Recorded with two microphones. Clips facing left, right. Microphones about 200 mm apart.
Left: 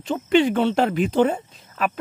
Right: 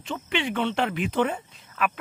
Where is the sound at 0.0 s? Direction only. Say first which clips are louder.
Left 11 dB; 40° left (ahead or behind).